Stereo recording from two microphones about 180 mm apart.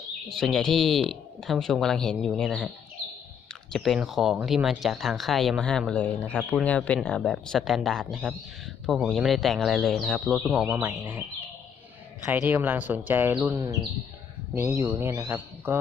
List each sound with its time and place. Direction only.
0.3 s speech: centre (ahead or behind)
12.2 s speech: 10° right (ahead or behind)